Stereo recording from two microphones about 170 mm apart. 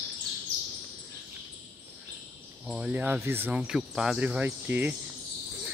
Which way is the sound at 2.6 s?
5° right (ahead or behind).